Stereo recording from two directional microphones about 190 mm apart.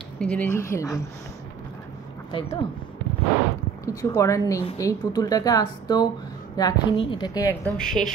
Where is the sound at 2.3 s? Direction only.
25° left (ahead or behind).